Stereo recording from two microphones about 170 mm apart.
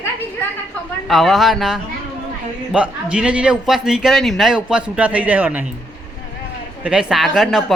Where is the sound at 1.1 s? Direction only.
Centre (ahead or behind).